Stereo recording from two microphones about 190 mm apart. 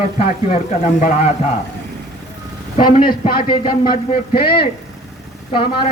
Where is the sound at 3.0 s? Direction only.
25° left (ahead or behind).